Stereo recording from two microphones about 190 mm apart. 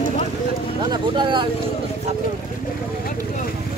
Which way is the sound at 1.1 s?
25° right (ahead or behind).